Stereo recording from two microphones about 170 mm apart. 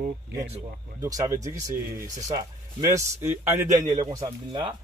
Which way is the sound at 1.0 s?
20° right (ahead or behind).